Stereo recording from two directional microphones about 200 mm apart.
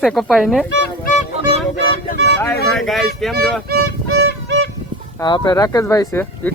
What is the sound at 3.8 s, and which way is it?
Violin, 60° right (ahead or behind).